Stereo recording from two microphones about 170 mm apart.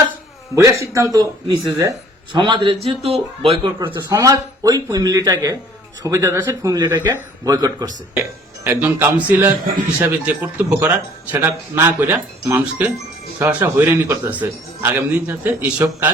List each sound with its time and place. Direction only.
0.5 s speech: 20° right (ahead or behind)
3.8 s speech: 20° right (ahead or behind)